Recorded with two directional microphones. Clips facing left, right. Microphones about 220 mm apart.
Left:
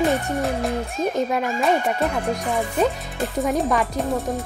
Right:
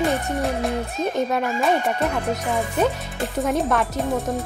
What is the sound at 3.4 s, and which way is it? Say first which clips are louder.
Speech: even; centre (ahead or behind).